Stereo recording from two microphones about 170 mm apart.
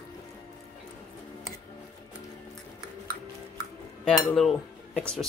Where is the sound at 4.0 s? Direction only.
5° left (ahead or behind).